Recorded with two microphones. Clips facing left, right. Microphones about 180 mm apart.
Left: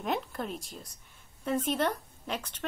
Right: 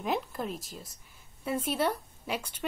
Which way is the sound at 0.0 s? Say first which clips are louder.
Right 1 dB; centre (ahead or behind).